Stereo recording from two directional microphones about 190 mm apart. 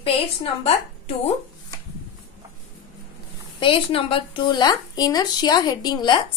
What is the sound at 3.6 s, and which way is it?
Speech, 30° left (ahead or behind).